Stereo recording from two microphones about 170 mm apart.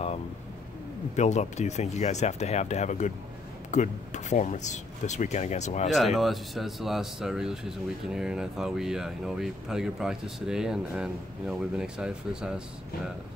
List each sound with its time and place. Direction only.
1.1 s speech: 40° left (ahead or behind)
5.9 s speech: centre (ahead or behind)